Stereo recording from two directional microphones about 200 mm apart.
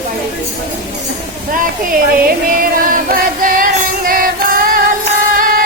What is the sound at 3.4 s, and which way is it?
Music, 45° right (ahead or behind).